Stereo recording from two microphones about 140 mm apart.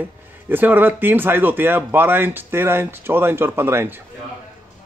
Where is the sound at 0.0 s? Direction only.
15° right (ahead or behind).